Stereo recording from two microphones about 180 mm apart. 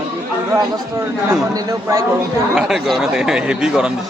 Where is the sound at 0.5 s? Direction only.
15° right (ahead or behind).